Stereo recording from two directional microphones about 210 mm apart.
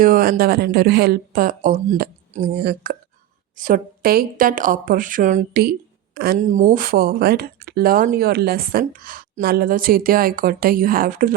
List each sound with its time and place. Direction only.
0.0 s speech: 45° right (ahead or behind)